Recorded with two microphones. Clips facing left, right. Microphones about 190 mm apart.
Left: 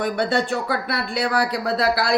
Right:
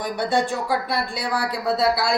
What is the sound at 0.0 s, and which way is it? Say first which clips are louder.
A man's voice: left 1 dB; 65° left (ahead or behind).